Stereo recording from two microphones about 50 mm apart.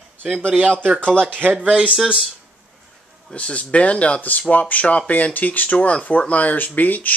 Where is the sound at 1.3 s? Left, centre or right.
Right.